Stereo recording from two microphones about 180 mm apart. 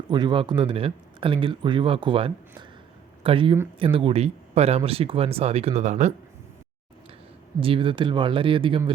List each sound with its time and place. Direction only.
0.1 s speech: 25° right (ahead or behind); by 6.1 s 40° right (ahead or behind)
7.6 s speech: 30° right (ahead or behind)